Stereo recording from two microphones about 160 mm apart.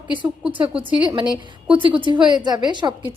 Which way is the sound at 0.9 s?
30° right (ahead or behind).